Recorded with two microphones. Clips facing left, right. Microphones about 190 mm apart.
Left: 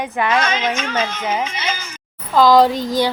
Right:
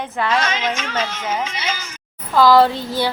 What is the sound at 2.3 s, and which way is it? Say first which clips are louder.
Speech: left 1 dB; 15° left (ahead or behind).